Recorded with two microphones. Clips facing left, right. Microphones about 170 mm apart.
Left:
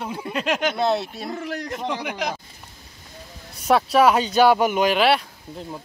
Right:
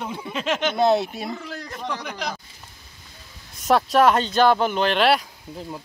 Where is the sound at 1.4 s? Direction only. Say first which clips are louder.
Left 5 dB; 15° left (ahead or behind).